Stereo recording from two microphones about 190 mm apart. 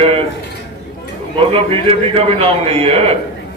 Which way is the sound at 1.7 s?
30° right (ahead or behind).